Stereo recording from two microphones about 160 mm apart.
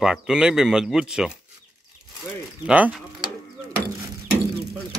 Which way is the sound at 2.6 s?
5° right (ahead or behind).